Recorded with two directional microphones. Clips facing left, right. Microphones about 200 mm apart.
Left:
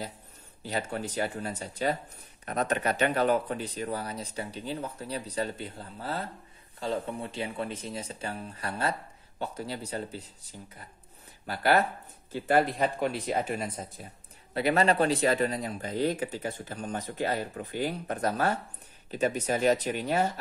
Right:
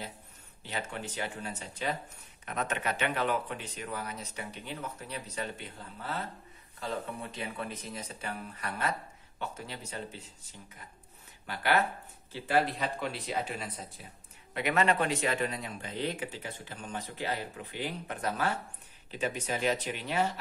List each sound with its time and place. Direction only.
0.6 s speech: 40° left (ahead or behind)
12.3 s a man's voice: 50° left (ahead or behind)
14.5 s a man's voice: 35° left (ahead or behind)